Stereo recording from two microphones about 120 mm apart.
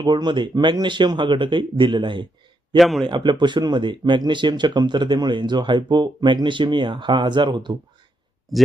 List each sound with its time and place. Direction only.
0.0 s speech: 40° right (ahead or behind)
2.7 s a man's voice: centre (ahead or behind)
3.1 s speech: 40° right (ahead or behind)
8.5 s a man's voice: centre (ahead or behind)